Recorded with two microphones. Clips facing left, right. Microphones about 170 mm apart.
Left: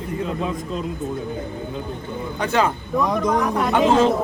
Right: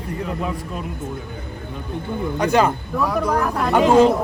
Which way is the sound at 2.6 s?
5° right (ahead or behind).